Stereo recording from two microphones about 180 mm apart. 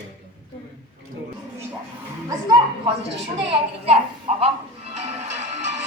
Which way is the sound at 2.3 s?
20° right (ahead or behind).